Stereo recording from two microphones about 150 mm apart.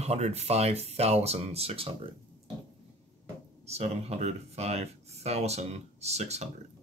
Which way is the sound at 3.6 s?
45° right (ahead or behind).